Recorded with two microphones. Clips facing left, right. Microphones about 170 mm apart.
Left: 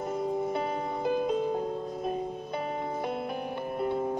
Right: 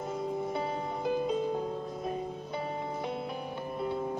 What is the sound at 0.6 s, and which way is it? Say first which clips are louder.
Music: left 3 dB; 55° left (ahead or behind).